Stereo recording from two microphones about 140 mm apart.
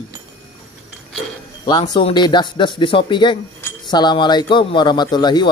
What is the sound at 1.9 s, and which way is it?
Speech, 35° left (ahead or behind).